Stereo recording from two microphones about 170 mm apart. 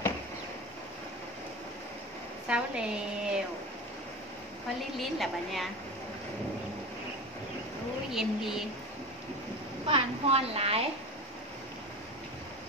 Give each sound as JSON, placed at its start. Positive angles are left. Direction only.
{"t": 2.4, "sound": "a woman's voice", "side_deg": -5}
{"t": 4.9, "sound": "a woman's voice", "side_deg": 0}
{"t": 8.1, "sound": "a woman's voice", "side_deg": 0}
{"t": 9.8, "sound": "a woman's voice", "side_deg": -30}